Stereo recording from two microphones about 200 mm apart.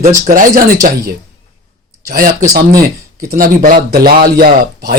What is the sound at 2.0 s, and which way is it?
Speech, 45° right (ahead or behind).